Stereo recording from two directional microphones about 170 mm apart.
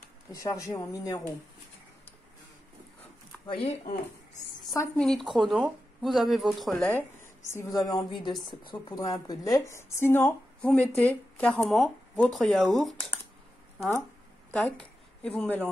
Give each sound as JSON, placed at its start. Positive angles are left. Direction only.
{"t": 0.3, "sound": "speech", "side_deg": 20}
{"t": 3.4, "sound": "speech", "side_deg": 35}
{"t": 4.9, "sound": "speech", "side_deg": 0}
{"t": 7.5, "sound": "a woman's voice", "side_deg": 20}
{"t": 14.5, "sound": "a woman's voice", "side_deg": 5}